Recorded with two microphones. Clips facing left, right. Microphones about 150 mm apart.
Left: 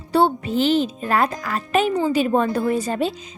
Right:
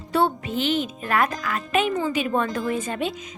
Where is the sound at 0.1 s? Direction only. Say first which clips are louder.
Left 4 dB; 35° left (ahead or behind).